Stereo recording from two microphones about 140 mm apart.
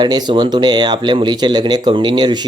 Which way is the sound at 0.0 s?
30° right (ahead or behind).